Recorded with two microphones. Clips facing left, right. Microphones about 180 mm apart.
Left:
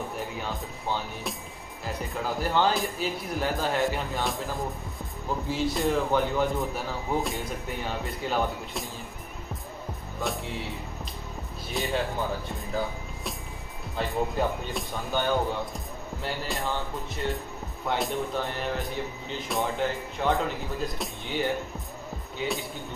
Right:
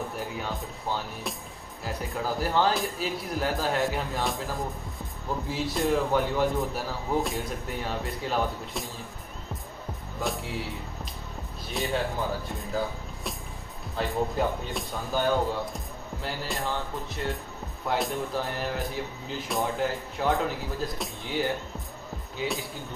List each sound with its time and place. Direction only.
0.2 s speech: centre (ahead or behind)
10.2 s speech: centre (ahead or behind)
11.7 s speech: centre (ahead or behind)
13.9 s speech: centre (ahead or behind)